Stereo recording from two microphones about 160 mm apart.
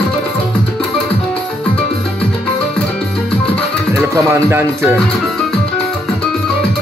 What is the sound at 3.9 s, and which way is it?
Speech, 15° right (ahead or behind).